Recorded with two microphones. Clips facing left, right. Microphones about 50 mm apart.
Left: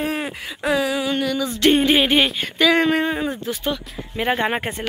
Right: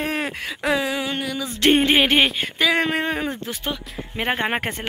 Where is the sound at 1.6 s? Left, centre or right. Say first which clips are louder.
Even; right.